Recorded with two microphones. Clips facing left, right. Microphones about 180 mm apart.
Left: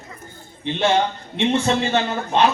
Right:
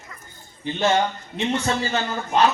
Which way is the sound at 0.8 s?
30° left (ahead or behind).